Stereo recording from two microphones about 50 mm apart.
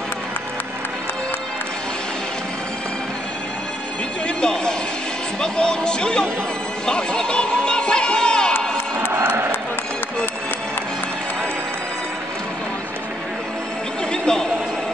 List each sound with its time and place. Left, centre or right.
4.4 s speech: centre
6.9 s music: centre
14.1 s a sound: centre